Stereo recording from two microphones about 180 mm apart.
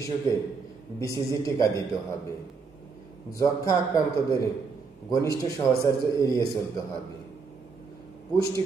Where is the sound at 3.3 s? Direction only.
20° left (ahead or behind).